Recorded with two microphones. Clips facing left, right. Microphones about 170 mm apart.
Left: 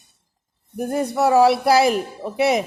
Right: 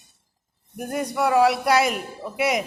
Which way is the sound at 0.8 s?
30° left (ahead or behind).